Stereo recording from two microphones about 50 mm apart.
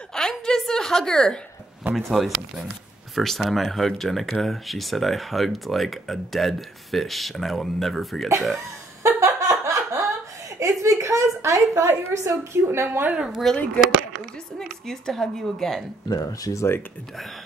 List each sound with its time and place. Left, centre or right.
0.1 s a sound: centre
0.7 s a woman's voice: centre
2.0 s speech: centre
9.0 s a sound: right
10.6 s a woman's voice: right
12.8 s a woman's voice: right
13.3 s speech: centre
14.9 s a woman's voice: centre
16.3 s speech: left